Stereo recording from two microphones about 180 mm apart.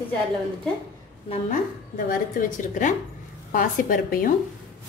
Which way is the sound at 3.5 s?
50° left (ahead or behind).